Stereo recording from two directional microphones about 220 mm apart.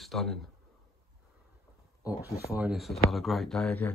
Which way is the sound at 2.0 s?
15° left (ahead or behind).